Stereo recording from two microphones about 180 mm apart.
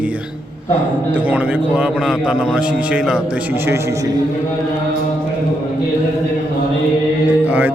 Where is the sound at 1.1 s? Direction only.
10° right (ahead or behind).